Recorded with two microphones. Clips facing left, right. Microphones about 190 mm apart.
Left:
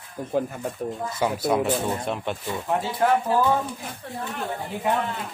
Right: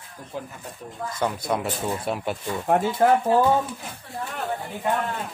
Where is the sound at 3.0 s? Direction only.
35° right (ahead or behind).